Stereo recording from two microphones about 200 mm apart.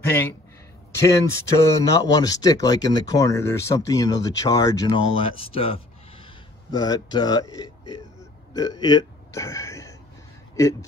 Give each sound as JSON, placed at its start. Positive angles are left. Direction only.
{"t": 0.0, "sound": "a man's voice", "side_deg": 10}